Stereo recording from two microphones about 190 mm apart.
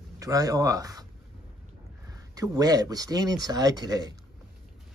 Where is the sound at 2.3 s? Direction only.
20° right (ahead or behind).